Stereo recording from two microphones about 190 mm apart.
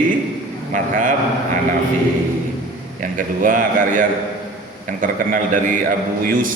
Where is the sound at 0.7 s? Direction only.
45° right (ahead or behind).